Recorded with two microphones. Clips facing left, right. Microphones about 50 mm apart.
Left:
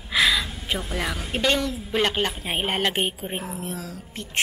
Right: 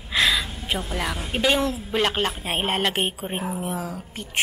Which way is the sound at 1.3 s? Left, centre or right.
Centre.